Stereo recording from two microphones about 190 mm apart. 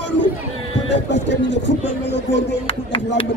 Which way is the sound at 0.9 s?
70° left (ahead or behind).